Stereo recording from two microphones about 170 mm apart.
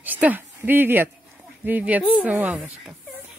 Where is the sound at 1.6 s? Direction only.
10° right (ahead or behind).